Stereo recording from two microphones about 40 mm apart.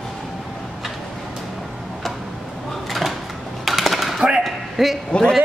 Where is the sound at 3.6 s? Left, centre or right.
Centre.